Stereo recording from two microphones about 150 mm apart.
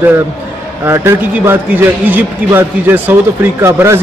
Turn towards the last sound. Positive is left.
turn(degrees=-15)  # may be behind; listen again after turning